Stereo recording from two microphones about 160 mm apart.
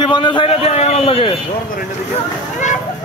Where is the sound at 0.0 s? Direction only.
30° left (ahead or behind).